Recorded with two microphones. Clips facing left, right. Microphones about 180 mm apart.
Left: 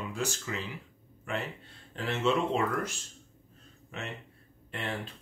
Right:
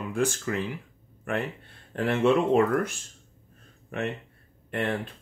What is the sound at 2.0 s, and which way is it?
Speech, 55° right (ahead or behind).